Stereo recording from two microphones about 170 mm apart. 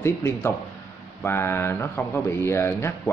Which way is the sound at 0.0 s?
15° left (ahead or behind).